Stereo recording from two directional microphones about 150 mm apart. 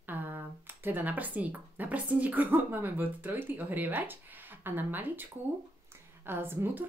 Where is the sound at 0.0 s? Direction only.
15° right (ahead or behind).